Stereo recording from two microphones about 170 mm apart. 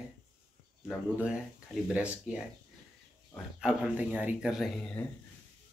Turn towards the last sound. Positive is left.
turn(degrees=10)  # may be behind; listen again after turning